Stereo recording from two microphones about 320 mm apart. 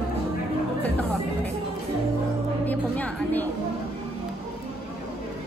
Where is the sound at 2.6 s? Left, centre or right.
Centre.